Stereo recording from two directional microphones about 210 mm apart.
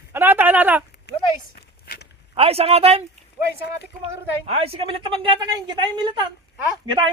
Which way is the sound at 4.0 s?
30° right (ahead or behind).